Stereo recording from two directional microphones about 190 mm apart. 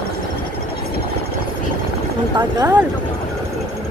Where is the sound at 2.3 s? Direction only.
20° right (ahead or behind).